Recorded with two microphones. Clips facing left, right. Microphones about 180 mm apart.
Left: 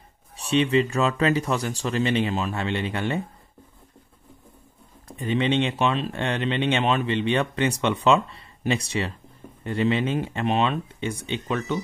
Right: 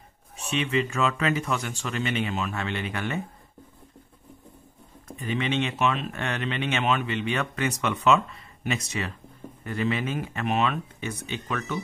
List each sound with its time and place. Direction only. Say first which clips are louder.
0.4 s speech: left 6 dB; 35° left (ahead or behind)
5.0 s speech: left 5 dB; 30° left (ahead or behind)